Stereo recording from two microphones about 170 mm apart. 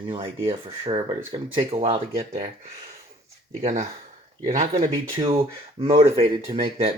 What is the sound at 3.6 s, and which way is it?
Speech, 40° right (ahead or behind).